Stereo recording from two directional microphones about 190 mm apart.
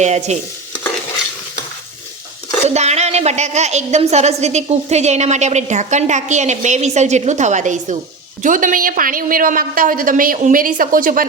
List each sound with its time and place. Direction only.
0.0 s a woman's voice: 35° right (ahead or behind)
2.6 s a woman's voice: 35° right (ahead or behind)